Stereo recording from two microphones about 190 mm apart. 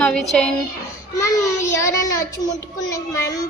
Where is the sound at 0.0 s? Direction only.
Centre (ahead or behind).